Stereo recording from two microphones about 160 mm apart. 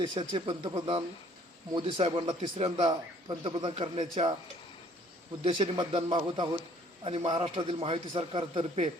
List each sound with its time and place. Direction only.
0.0 s speech: 30° right (ahead or behind)
5.4 s speech: 35° right (ahead or behind)